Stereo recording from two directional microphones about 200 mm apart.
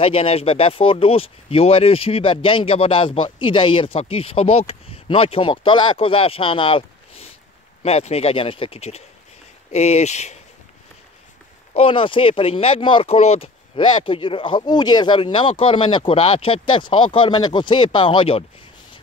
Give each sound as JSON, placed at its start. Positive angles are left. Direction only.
{"t": 0.0, "sound": "speech", "side_deg": 30}
{"t": 11.7, "sound": "speech", "side_deg": 25}